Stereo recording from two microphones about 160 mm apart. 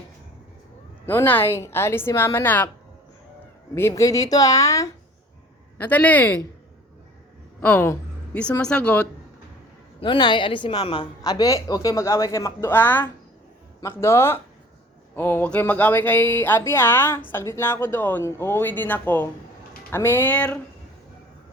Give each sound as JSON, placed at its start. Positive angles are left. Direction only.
{"t": 1.0, "sound": "speech", "side_deg": 15}
{"t": 3.8, "sound": "a woman's voice", "side_deg": 15}
{"t": 5.7, "sound": "speech", "side_deg": 10}
{"t": 7.6, "sound": "a woman's voice", "side_deg": 10}
{"t": 10.0, "sound": "a woman's voice", "side_deg": 30}